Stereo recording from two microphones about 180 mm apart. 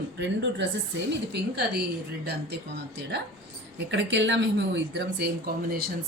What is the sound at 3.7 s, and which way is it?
A woman's voice, 85° right.